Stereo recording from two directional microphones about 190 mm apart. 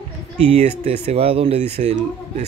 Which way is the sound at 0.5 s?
35° right (ahead or behind).